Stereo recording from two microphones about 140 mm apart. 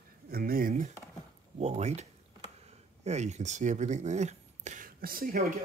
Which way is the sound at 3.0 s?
55° right (ahead or behind).